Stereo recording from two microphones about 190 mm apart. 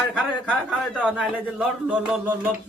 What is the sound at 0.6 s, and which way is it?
Speech, 5° right (ahead or behind).